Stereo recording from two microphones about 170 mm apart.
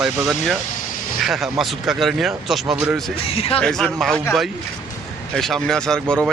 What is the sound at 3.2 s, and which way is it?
Speech, 35° left (ahead or behind).